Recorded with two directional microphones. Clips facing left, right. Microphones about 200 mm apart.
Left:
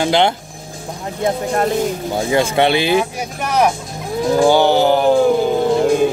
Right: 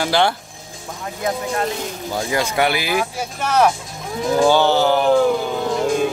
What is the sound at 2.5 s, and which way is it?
Speech, 25° left (ahead or behind).